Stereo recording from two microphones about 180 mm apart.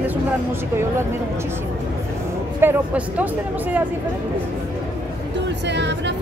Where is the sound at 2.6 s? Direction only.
10° right (ahead or behind).